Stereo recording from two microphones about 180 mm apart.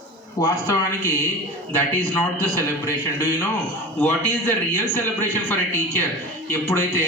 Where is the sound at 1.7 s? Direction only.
10° left (ahead or behind).